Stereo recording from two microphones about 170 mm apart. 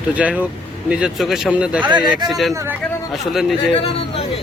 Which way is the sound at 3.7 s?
35° left (ahead or behind).